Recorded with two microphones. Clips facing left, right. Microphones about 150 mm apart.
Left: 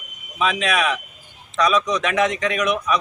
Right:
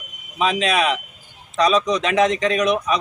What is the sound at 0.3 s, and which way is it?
A man's voice, 30° right (ahead or behind).